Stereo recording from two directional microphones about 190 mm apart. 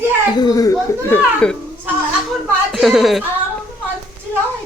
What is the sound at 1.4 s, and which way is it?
Speech, 5° left (ahead or behind).